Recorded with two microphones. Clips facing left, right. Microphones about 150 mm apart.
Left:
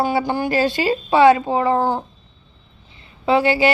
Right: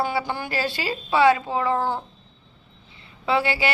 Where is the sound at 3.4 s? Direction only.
20° left (ahead or behind).